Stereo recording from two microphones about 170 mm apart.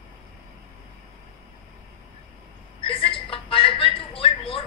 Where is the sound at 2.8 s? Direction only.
30° left (ahead or behind).